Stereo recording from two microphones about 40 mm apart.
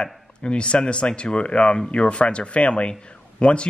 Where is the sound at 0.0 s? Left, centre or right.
Left.